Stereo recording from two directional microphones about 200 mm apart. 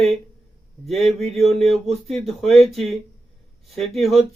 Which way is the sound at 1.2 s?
30° right (ahead or behind).